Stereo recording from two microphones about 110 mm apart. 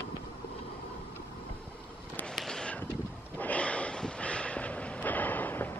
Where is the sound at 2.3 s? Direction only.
5° left (ahead or behind).